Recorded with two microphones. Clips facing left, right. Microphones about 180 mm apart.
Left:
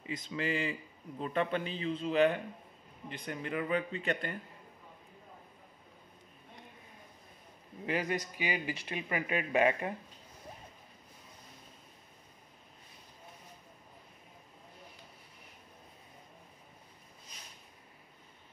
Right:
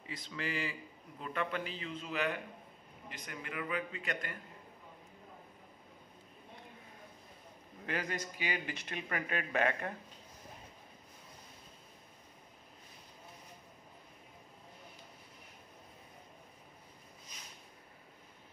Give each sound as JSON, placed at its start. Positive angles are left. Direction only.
{"t": 0.0, "sound": "a man's voice", "side_deg": 20}
{"t": 7.8, "sound": "speech", "side_deg": 15}